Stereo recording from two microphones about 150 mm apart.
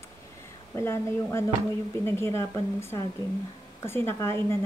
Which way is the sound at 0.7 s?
15° left (ahead or behind).